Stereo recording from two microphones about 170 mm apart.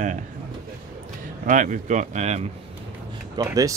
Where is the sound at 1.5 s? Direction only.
50° right (ahead or behind).